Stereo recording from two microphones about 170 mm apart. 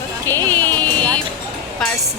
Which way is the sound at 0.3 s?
10° left (ahead or behind).